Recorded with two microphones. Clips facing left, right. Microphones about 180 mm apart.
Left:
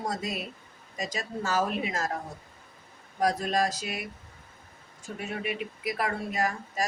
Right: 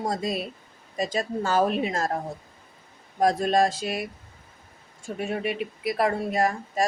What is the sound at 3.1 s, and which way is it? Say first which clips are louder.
Speech: right 5 dB; 25° right (ahead or behind).